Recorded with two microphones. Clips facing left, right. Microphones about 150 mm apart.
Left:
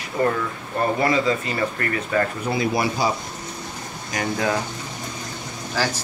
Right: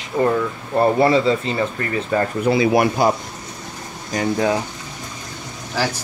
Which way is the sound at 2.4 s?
80° right.